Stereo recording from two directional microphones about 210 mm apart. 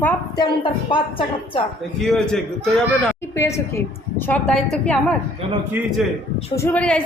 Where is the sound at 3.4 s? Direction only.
15° left (ahead or behind).